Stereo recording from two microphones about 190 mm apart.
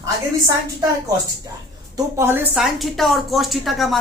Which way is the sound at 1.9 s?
15° right (ahead or behind).